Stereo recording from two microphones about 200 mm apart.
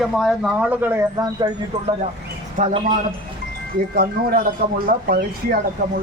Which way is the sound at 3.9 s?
50° right (ahead or behind).